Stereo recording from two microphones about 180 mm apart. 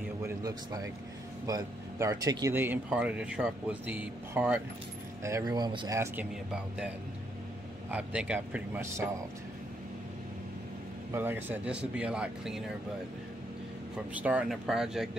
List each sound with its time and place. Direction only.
0.2 s speech: 20° right (ahead or behind)
5.2 s speech: 20° right (ahead or behind)
5.9 s speech: 5° right (ahead or behind)
7.9 s speech: 5° right (ahead or behind)
11.1 s speech: 10° right (ahead or behind)
13.9 s speech: 10° right (ahead or behind)